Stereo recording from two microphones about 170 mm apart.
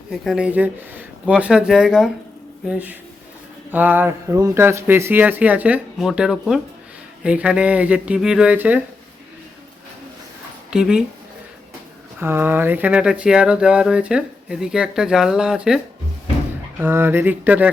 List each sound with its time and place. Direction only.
0.1 s speech: 5° right (ahead or behind)
10.7 s speech: 5° right (ahead or behind)
12.2 s speech: 10° right (ahead or behind)